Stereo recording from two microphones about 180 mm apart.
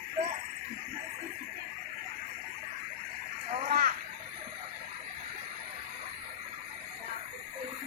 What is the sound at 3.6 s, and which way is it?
Splash, 45° right (ahead or behind).